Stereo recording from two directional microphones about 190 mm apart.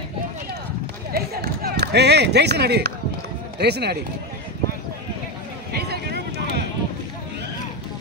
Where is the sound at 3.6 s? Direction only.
60° right (ahead or behind).